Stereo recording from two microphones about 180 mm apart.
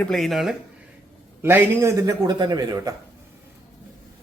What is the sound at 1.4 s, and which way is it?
A man's voice, 15° right (ahead or behind).